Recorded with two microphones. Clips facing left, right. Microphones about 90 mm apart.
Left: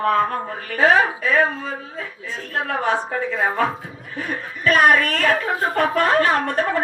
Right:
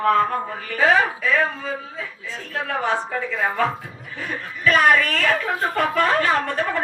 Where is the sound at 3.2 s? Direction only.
35° left (ahead or behind).